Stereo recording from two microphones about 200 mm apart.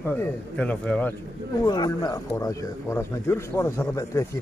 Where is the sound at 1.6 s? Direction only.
20° left (ahead or behind).